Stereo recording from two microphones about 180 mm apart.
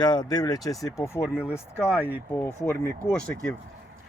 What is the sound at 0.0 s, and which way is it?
Speech, 25° left (ahead or behind).